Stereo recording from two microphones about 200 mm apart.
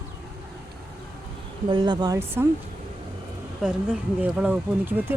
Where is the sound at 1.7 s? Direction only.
20° right (ahead or behind).